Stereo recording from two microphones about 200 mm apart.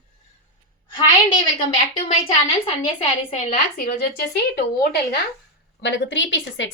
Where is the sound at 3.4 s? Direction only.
45° left (ahead or behind).